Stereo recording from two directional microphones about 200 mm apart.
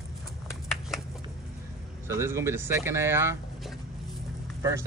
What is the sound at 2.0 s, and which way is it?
Speech, 15° right (ahead or behind).